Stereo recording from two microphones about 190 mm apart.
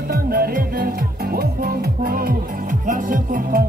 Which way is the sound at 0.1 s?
50° right (ahead or behind).